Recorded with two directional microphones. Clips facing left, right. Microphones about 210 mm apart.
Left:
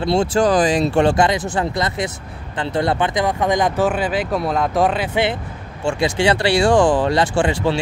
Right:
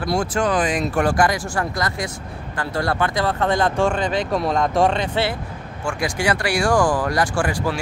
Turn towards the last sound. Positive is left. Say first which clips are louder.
# left 4 dB
turn(degrees=25)  # may be behind; listen again after turning